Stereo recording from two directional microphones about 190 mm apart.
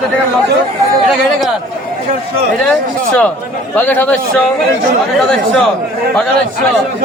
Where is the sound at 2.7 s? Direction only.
5° left (ahead or behind).